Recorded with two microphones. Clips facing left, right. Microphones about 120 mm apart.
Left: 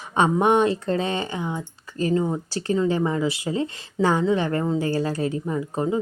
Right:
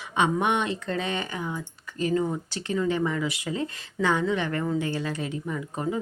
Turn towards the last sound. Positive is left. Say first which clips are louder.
# left 5 dB
turn(degrees=25)  # may be behind; listen again after turning